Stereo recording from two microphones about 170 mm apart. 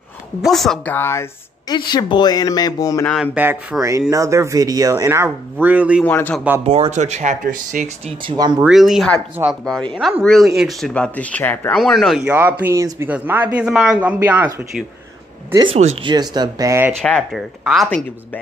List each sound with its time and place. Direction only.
0.4 s speech: centre (ahead or behind)
0.9 s speech: 15° left (ahead or behind)
1.7 s speech: 25° left (ahead or behind)
3.4 s speech: 10° right (ahead or behind)
4.1 s speech: 20° right (ahead or behind)
6.0 s speech: 10° left (ahead or behind)
6.6 s speech: 35° right (ahead or behind); by 7.8 s 50° right (ahead or behind)
8.3 s speech: 25° right (ahead or behind)
8.6 s speech: centre (ahead or behind)
11.7 s speech: centre (ahead or behind)
15.5 s speech: 30° right (ahead or behind); by 16.9 s 15° right (ahead or behind)
17.0 s speech: centre (ahead or behind)